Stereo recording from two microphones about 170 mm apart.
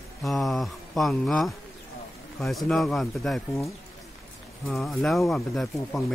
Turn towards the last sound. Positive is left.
turn(degrees=0)  # may be behind; listen again after turning